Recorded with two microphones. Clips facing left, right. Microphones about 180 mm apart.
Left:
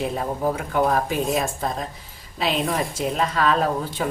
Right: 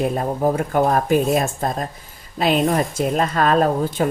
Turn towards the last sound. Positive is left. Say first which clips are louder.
# right 5 dB
turn(degrees=-50)  # may be behind; listen again after turning